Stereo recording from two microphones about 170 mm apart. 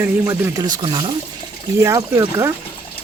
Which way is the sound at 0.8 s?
30° right (ahead or behind).